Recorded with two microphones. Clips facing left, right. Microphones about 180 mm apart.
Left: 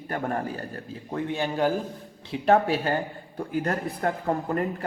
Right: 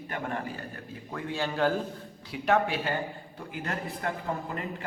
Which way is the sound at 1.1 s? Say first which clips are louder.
Left 4 dB; 20° left (ahead or behind).